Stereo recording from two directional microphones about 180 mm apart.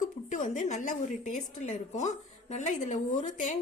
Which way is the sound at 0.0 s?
45° left (ahead or behind).